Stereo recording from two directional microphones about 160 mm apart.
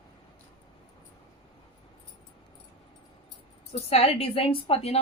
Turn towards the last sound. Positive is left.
turn(degrees=35)  # may be behind; listen again after turning